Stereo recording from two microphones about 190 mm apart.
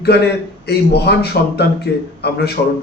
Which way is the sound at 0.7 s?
60° left (ahead or behind).